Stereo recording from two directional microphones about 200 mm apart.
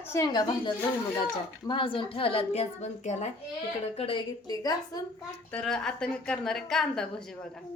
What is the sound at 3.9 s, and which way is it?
A woman's voice, 25° left (ahead or behind).